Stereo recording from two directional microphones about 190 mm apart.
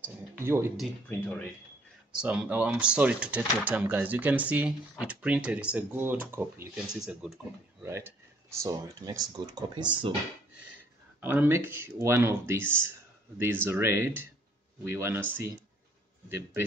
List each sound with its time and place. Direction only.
0.0 s a sound: 10° right (ahead or behind)
0.7 s speech: 10° left (ahead or behind)
2.2 s speech: 5° right (ahead or behind)
7.8 s speech: 15° right (ahead or behind)
11.1 s speech: 10° right (ahead or behind)